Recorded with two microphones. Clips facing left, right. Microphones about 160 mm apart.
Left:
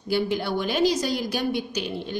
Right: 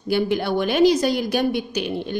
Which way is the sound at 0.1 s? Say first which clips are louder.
Right 4 dB; 60° right (ahead or behind).